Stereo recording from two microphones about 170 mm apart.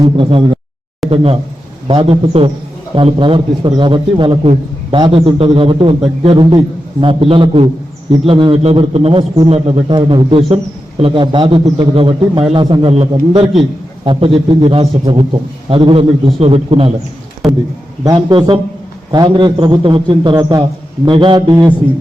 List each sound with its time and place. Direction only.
0.0 s a man's voice: 30° right (ahead or behind)
17.4 s speech: centre (ahead or behind)
18.0 s a man's voice: 25° right (ahead or behind)